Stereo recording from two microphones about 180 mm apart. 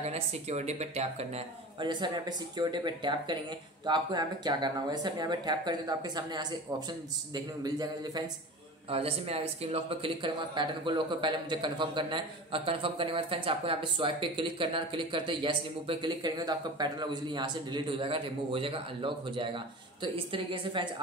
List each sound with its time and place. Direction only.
0.1 s speech: 35° right (ahead or behind); by 8.2 s 20° right (ahead or behind)
8.9 s speech: 35° right (ahead or behind)